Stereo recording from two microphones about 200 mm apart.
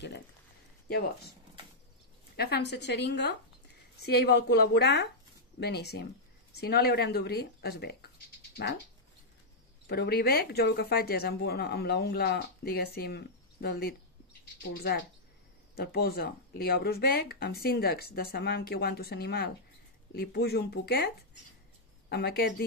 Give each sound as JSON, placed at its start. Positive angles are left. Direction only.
{"t": 0.8, "sound": "speech", "side_deg": 55}
{"t": 2.3, "sound": "speech", "side_deg": 50}
{"t": 9.8, "sound": "speech", "side_deg": 50}
{"t": 22.1, "sound": "speech", "side_deg": 55}